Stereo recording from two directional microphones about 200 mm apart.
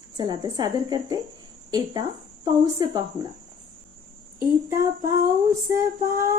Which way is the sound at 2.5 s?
20° right (ahead or behind).